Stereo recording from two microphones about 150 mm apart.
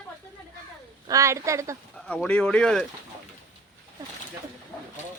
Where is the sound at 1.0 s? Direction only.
20° right (ahead or behind).